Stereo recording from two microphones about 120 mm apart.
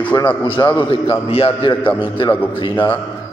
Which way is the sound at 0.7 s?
50° left (ahead or behind).